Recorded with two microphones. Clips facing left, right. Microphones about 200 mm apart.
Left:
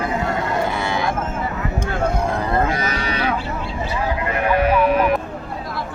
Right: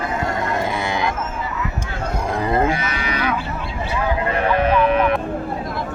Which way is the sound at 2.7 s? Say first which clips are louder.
Left 1 dB; 35° left (ahead or behind).